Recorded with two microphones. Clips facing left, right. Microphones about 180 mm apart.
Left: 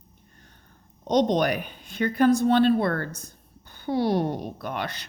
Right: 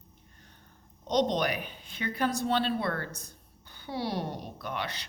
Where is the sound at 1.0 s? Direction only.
50° left (ahead or behind).